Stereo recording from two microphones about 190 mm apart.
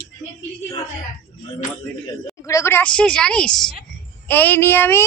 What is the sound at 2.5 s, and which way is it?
A woman's voice, 15° left (ahead or behind).